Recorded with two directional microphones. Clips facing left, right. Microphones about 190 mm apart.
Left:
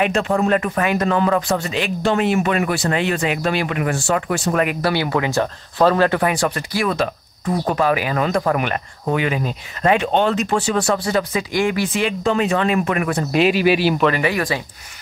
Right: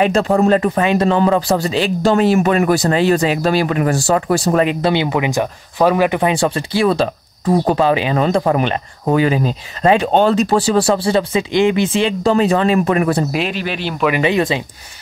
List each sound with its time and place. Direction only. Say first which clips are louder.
0.0 s speech: right 5 dB; 35° right (ahead or behind)
13.3 s speech: left 5 dB; 5° left (ahead or behind)
14.2 s speech: right 5 dB; 25° right (ahead or behind)